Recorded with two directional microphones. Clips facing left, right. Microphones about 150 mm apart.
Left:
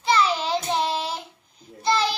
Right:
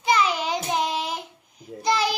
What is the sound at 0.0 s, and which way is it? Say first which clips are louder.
Child singing: even; 15° right (ahead or behind).